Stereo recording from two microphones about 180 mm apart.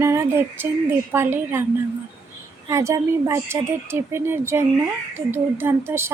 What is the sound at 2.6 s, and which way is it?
Speech, 15° right (ahead or behind).